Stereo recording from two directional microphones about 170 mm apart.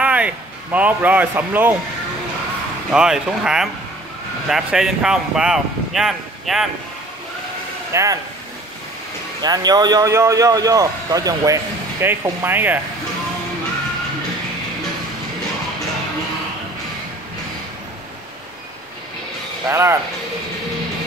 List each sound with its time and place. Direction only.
0.0 s a man's voice: 10° right (ahead or behind)
2.9 s speech: 5° right (ahead or behind)
7.9 s speech: 20° right (ahead or behind)
9.4 s a man's voice: 25° right (ahead or behind)
19.7 s speech: 15° right (ahead or behind)